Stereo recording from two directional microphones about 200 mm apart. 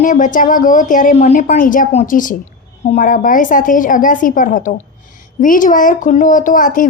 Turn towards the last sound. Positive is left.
turn(degrees=40)  # may be behind; listen again after turning